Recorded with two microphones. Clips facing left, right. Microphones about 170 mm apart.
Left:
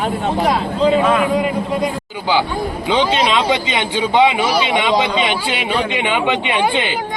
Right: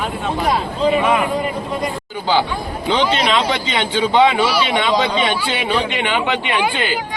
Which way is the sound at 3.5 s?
15° left (ahead or behind).